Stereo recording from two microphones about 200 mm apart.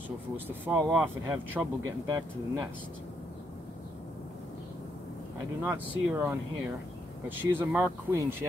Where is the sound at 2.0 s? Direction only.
20° right (ahead or behind).